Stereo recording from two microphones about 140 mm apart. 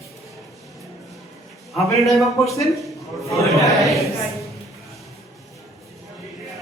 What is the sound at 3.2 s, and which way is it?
Speech, 20° left (ahead or behind).